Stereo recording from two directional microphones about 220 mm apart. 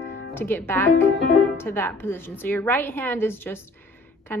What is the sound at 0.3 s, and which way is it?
A woman's voice, 10° left (ahead or behind).